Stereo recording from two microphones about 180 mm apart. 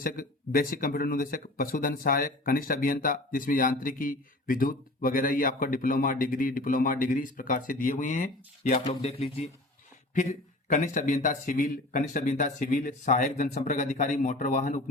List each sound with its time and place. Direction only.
0.0 s speech: 50° left (ahead or behind); by 9.5 s 35° left (ahead or behind)
10.7 s speech: 45° left (ahead or behind)